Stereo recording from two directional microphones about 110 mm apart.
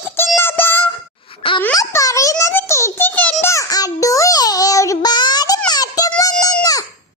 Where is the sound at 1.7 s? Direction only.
30° left (ahead or behind).